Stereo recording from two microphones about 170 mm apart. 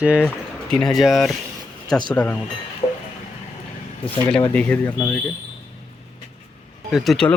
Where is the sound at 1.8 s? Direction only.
25° left (ahead or behind).